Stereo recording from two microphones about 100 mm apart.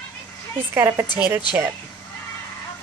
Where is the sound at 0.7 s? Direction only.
25° right (ahead or behind).